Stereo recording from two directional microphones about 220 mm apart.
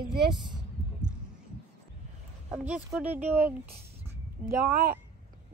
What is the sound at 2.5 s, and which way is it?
Speech, 5° right (ahead or behind).